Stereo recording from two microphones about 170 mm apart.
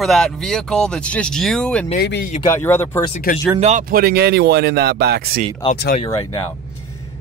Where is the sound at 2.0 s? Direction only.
75° left (ahead or behind).